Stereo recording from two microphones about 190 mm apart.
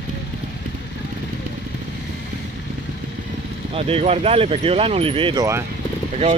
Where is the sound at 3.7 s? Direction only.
30° right (ahead or behind).